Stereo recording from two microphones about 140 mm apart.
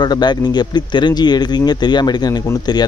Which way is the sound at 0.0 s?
30° left (ahead or behind).